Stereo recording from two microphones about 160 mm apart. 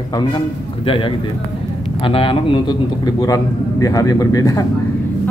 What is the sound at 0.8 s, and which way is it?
Speech, 35° left (ahead or behind).